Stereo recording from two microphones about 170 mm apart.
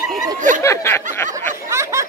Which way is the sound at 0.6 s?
15° left (ahead or behind).